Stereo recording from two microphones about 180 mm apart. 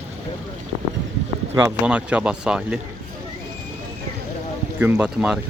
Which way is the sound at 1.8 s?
5° right (ahead or behind).